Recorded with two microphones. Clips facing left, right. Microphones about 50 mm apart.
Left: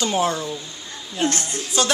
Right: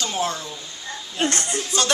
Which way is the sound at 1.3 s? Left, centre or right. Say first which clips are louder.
Right 2 dB; right.